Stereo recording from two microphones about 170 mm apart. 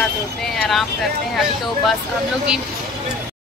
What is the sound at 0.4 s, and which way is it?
Speech, centre (ahead or behind).